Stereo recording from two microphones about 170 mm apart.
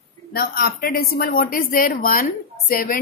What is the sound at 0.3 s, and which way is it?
Speech, 65° left (ahead or behind).